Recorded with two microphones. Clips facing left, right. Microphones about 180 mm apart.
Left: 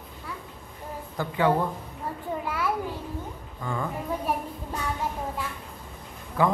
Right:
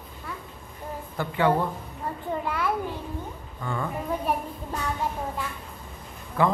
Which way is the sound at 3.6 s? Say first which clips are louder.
Even; 10° left (ahead or behind).